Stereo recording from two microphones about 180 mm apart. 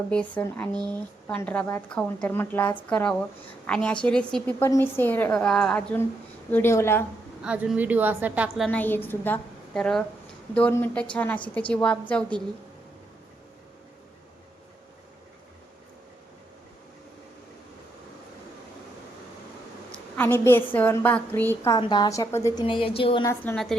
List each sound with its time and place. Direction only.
0.1 s a woman's voice: 5° left (ahead or behind)
7.4 s a woman's voice: 5° right (ahead or behind)
19.9 s a woman's voice: 10° left (ahead or behind)
21.8 s a woman's voice: 25° left (ahead or behind)
23.2 s a woman's voice: 15° left (ahead or behind)